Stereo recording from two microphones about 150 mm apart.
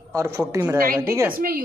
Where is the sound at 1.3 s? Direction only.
75° right (ahead or behind).